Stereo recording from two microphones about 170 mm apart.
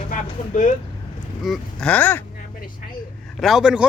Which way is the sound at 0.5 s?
50° left (ahead or behind).